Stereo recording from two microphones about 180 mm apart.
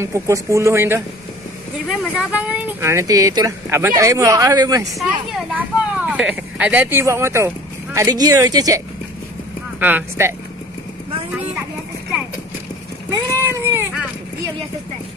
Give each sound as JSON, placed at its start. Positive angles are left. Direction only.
{"t": 0.0, "sound": "speech", "side_deg": -15}
{"t": 5.5, "sound": "speech", "side_deg": -5}
{"t": 13.1, "sound": "boat", "side_deg": -15}